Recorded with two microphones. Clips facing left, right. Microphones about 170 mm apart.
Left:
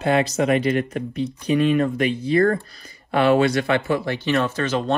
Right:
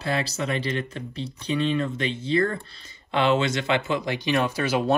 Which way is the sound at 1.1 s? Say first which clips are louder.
Left 6 dB; 30° right (ahead or behind).